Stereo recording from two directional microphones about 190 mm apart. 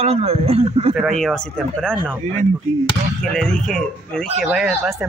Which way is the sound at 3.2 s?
5° left (ahead or behind).